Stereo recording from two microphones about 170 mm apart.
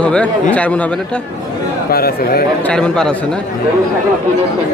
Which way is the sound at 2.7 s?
5° left (ahead or behind).